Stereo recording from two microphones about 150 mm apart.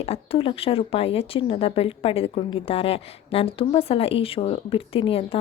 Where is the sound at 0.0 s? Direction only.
40° left (ahead or behind).